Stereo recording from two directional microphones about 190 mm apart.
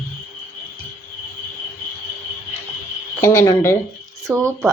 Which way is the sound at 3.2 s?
15° left (ahead or behind).